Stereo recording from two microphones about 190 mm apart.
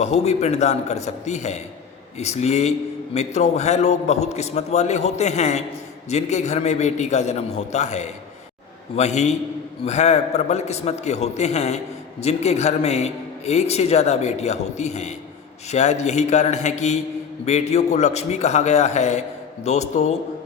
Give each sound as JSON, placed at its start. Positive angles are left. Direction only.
{"t": 0.0, "sound": "a man's voice", "side_deg": 35}